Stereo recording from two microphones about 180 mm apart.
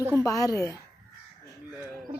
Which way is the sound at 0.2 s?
20° left (ahead or behind).